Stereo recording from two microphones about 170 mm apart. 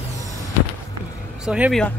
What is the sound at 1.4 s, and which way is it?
Speech, 5° right (ahead or behind).